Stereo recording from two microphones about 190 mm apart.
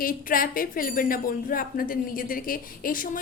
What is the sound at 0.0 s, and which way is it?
Speech, 50° left (ahead or behind).